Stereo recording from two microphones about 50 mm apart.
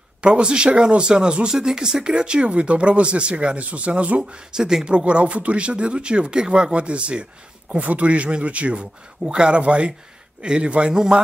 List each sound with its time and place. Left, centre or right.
0.2 s speech: centre
4.2 s speech: centre